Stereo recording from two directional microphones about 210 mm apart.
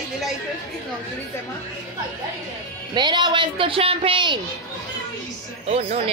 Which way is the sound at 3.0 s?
20° right (ahead or behind).